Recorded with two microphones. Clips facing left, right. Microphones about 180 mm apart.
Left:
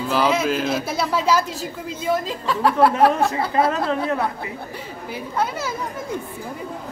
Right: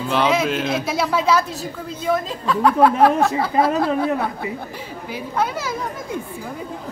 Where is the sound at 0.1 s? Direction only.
5° left (ahead or behind).